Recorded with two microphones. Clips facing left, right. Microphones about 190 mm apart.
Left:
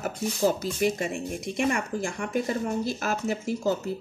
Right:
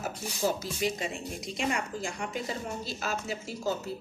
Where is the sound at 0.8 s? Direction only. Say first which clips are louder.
Left 6 dB; 55° left (ahead or behind).